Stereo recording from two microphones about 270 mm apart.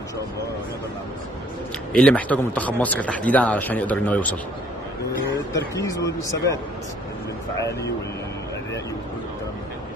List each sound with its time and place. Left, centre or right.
1.9 s a man's voice: centre
5.5 s speech: centre